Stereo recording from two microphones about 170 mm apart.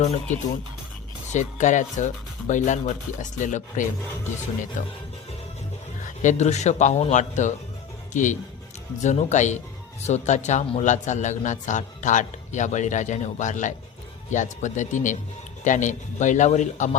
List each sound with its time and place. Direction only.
0.0 s speech: 45° left (ahead or behind)
6.1 s speech: 45° left (ahead or behind)